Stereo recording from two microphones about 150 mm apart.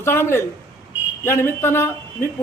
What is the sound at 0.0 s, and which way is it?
A man's voice, 15° left (ahead or behind).